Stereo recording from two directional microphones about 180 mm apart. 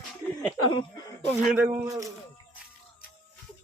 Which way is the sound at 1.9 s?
20° right (ahead or behind).